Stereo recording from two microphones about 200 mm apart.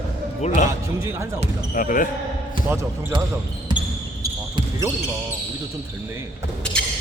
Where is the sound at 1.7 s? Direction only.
45° left (ahead or behind).